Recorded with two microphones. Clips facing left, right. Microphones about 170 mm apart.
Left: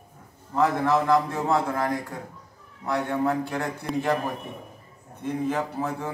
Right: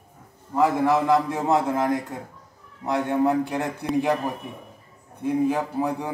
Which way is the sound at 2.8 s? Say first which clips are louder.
Right 3 dB; 20° right (ahead or behind).